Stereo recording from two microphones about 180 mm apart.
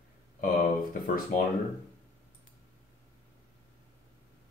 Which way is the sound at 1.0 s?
50° left (ahead or behind).